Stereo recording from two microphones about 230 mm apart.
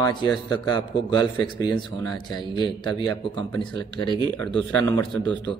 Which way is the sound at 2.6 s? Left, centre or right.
Centre.